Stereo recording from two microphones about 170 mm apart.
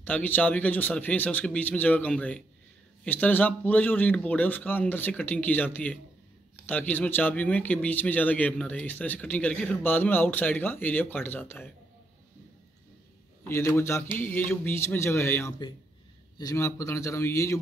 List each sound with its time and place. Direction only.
0.0 s speech: 10° left (ahead or behind)
13.5 s speech: 15° left (ahead or behind)